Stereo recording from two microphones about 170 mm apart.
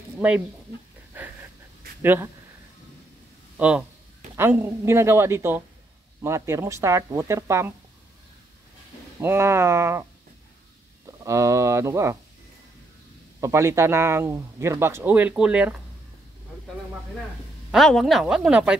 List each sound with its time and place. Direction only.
0.2 s speech: 5° right (ahead or behind)
1.1 s a sound: 10° right (ahead or behind)
2.0 s speech: 15° right (ahead or behind)
3.5 s speech: 5° right (ahead or behind)
9.2 s speech: 15° right (ahead or behind)
11.1 s speech: 20° right (ahead or behind)
13.4 s speech: 15° right (ahead or behind)
17.6 s a woman's voice: centre (ahead or behind)